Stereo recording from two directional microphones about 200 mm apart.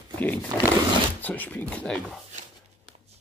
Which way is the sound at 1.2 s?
10° left (ahead or behind).